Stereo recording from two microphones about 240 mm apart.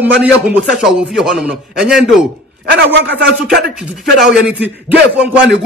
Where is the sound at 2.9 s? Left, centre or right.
Right.